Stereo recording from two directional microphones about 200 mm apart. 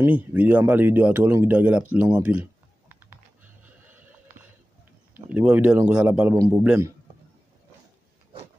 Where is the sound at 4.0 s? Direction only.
10° right (ahead or behind).